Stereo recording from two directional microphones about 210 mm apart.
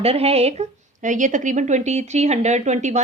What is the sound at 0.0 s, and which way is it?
A woman's voice, 30° right (ahead or behind).